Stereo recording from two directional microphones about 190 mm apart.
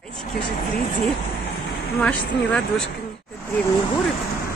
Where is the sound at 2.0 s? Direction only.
5° left (ahead or behind).